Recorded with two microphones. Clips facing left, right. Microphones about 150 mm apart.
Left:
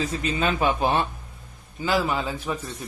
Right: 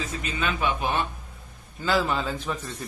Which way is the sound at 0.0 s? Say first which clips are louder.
Left 5 dB; 30° left (ahead or behind).